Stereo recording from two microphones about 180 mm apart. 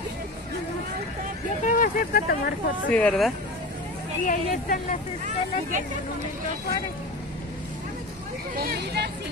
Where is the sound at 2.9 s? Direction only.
5° left (ahead or behind).